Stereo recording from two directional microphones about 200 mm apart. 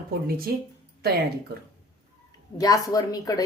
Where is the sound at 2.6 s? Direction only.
15° left (ahead or behind).